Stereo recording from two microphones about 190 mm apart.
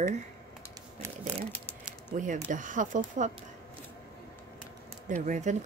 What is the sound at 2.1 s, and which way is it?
Speech, 40° right (ahead or behind).